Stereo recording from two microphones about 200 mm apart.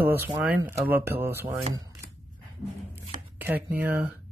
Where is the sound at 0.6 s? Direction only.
10° right (ahead or behind).